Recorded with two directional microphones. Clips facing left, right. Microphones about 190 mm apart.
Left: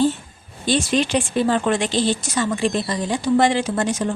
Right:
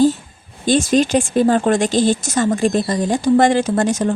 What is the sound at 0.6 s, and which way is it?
Speech, 45° right (ahead or behind).